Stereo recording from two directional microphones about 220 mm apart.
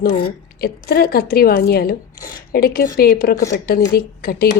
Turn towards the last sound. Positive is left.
turn(degrees=45)  # may be behind; listen again after turning